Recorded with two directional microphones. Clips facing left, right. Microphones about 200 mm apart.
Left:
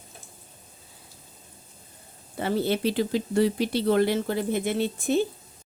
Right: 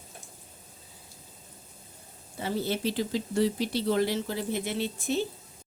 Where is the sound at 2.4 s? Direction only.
65° left (ahead or behind).